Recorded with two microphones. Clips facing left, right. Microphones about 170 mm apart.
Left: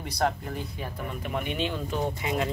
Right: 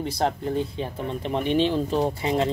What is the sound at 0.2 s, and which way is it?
Speech, 25° right (ahead or behind).